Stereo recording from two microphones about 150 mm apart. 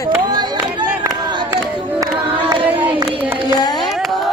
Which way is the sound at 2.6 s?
10° right (ahead or behind).